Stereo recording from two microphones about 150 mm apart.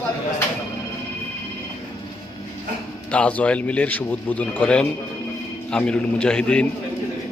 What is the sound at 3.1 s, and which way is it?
A man's voice, 10° left (ahead or behind).